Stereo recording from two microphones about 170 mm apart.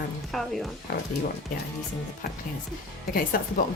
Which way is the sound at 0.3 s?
Centre (ahead or behind).